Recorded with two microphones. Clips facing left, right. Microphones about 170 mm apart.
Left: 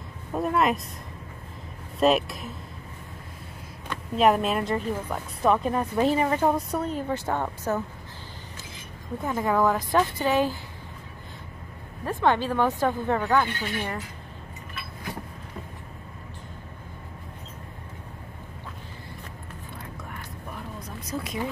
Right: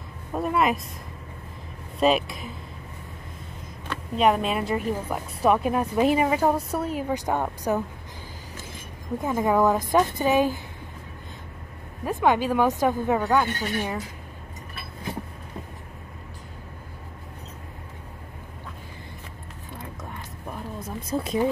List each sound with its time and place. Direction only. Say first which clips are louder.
0.3 s speech: even; centre (ahead or behind)
2.0 s speech: even; centre (ahead or behind)
4.2 s speech: even; centre (ahead or behind)
9.2 s speech: right 2 dB; 15° right (ahead or behind)
12.1 s speech: right 2 dB; 10° right (ahead or behind)
13.5 s speech: right 3 dB; 40° right (ahead or behind)
20.8 s a sound: right 6 dB; 30° right (ahead or behind)